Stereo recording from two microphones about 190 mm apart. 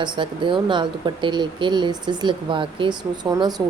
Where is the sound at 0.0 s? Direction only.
25° right (ahead or behind).